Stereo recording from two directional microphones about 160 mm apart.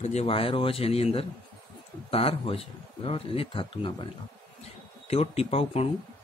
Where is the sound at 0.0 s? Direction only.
40° left (ahead or behind).